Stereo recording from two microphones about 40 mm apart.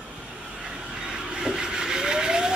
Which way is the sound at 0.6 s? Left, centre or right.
Centre.